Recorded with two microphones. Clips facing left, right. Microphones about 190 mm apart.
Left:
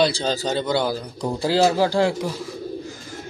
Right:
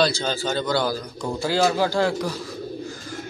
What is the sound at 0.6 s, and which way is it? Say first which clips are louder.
A man's voice: left 1 dB; 25° left (ahead or behind).